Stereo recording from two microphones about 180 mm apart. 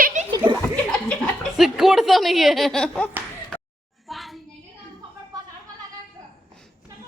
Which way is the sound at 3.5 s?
5° left (ahead or behind).